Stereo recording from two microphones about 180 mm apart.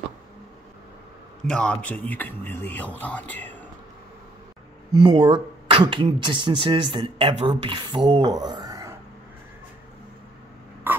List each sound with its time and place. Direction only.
1.5 s speech: 5° left (ahead or behind)
5.0 s speech: 25° right (ahead or behind)
10.9 s a sound: 10° right (ahead or behind)